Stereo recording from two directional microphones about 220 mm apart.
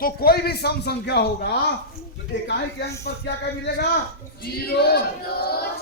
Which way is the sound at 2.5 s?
50° left (ahead or behind).